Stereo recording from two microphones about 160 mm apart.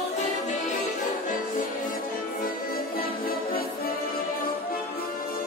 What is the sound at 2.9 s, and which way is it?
Music, 65° left (ahead or behind).